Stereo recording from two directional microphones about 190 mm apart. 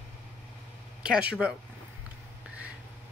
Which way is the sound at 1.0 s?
5° right (ahead or behind).